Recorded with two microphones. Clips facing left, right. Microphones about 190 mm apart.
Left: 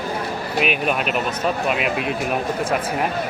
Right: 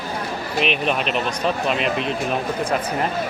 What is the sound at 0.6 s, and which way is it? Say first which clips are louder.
Speech: even; 5° left (ahead or behind).